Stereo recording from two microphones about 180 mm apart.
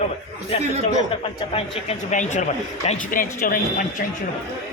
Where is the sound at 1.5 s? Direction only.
40° left (ahead or behind).